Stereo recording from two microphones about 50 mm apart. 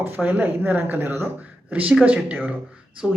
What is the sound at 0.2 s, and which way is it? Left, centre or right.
Speech, right.